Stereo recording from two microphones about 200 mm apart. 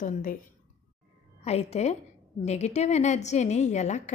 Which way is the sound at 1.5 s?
30° left (ahead or behind).